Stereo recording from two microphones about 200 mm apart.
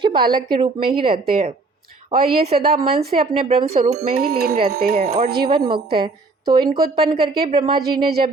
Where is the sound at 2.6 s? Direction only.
30° right (ahead or behind).